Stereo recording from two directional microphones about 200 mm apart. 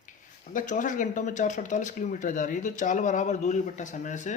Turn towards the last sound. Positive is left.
turn(degrees=35)  # may be behind; listen again after turning